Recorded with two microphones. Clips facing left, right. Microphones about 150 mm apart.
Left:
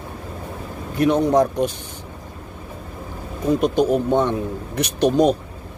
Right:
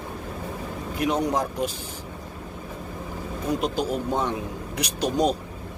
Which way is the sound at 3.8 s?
55° left (ahead or behind).